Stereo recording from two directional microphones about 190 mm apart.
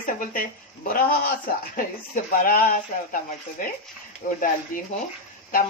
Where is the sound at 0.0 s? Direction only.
45° left (ahead or behind).